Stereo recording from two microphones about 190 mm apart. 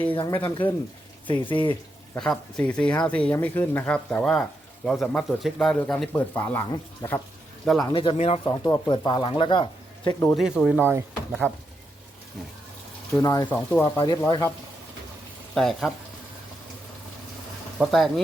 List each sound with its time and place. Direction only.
0.1 s speech: 25° left (ahead or behind)
2.1 s speech: 5° left (ahead or behind)
7.6 s speech: centre (ahead or behind)
7.9 s speech: 25° left (ahead or behind)
8.6 s speech: 20° left (ahead or behind)
10.3 s speech: centre (ahead or behind)
13.1 s speech: 20° left (ahead or behind)
15.5 s speech: centre (ahead or behind)
17.7 s speech: centre (ahead or behind)